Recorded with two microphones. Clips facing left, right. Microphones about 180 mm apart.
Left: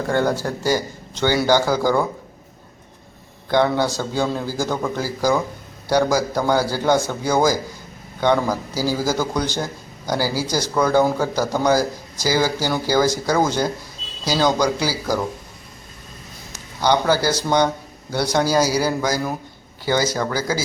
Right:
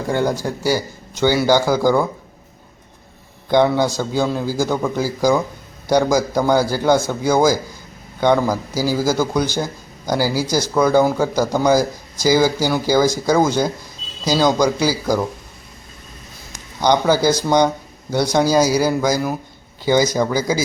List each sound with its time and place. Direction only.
0.1 s speech: 10° right (ahead or behind)
3.5 s speech: 15° right (ahead or behind)
16.5 s a sound: 15° right (ahead or behind)
17.2 s speech: 15° right (ahead or behind)